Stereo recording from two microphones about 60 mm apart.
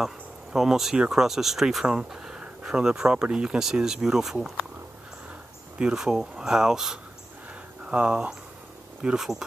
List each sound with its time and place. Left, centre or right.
0.0 s insect: centre
1.1 s speech: centre
5.8 s speech: centre
7.8 s speech: centre